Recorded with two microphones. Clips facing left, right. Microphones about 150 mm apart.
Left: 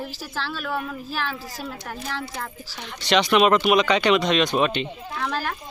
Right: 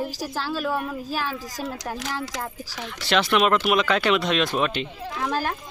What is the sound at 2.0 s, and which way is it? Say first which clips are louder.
Speech: right 1 dB; 90° right.